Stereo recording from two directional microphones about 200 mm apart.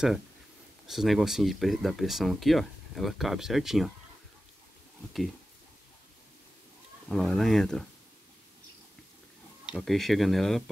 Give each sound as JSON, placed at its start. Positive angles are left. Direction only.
{"t": 0.8, "sound": "speech", "side_deg": 0}
{"t": 7.1, "sound": "speech", "side_deg": 0}
{"t": 9.7, "sound": "speech", "side_deg": 0}